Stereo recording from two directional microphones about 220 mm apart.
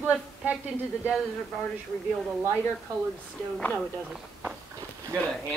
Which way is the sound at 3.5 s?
5° left (ahead or behind).